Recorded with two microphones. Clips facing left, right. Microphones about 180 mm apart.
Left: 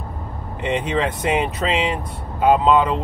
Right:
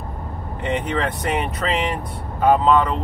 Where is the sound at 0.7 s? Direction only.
15° left (ahead or behind).